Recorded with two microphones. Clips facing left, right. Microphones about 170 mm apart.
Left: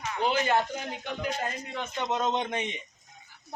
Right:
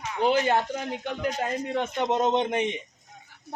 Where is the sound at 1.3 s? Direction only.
50° right (ahead or behind).